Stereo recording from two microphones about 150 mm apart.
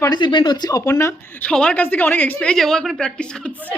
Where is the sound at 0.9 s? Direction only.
15° left (ahead or behind).